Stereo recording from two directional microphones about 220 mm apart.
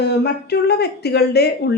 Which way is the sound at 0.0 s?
50° left (ahead or behind).